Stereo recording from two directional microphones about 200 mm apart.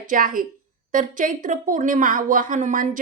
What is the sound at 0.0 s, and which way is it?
A woman's voice, 45° right (ahead or behind).